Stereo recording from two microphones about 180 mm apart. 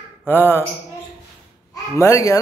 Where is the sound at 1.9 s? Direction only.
15° left (ahead or behind).